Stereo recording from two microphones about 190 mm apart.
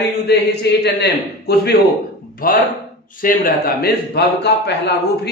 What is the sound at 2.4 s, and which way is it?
A man's voice, 50° left (ahead or behind).